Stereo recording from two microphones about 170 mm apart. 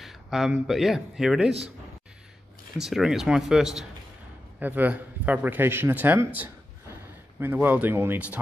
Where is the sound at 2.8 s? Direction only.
Centre (ahead or behind).